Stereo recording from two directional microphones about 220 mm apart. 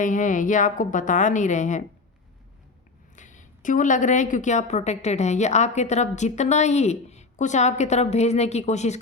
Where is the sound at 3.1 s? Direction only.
35° left (ahead or behind).